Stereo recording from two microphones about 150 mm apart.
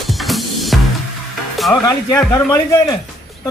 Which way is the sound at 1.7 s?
20° left (ahead or behind).